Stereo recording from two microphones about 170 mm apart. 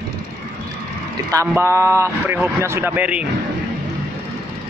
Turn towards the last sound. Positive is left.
turn(degrees=-10)  # may be behind; listen again after turning